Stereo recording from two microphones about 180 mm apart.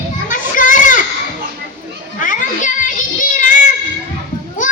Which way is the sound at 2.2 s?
45° left (ahead or behind).